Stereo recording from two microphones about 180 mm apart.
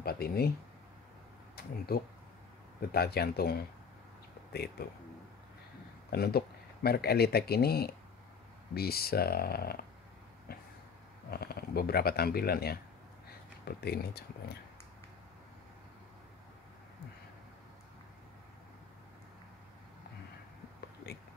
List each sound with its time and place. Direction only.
0.0 s a sound: 60° left (ahead or behind)
1.9 s speech: 60° left (ahead or behind)
6.0 s speech: 60° left (ahead or behind)
11.2 s speech: 60° left (ahead or behind)